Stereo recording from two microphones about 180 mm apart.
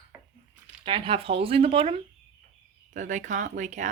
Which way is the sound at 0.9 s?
30° right (ahead or behind).